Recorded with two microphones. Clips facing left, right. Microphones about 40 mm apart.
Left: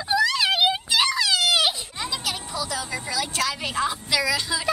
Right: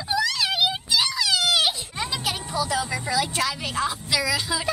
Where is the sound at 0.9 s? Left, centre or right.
Left.